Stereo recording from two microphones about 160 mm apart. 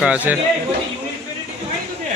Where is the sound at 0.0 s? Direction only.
10° right (ahead or behind).